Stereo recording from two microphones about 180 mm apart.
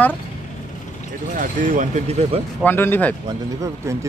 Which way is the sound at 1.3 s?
45° right (ahead or behind).